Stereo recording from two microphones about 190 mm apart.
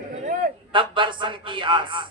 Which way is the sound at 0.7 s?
25° right (ahead or behind).